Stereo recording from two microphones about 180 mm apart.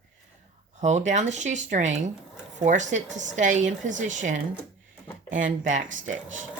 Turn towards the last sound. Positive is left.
turn(degrees=-45)  # may be behind; listen again after turning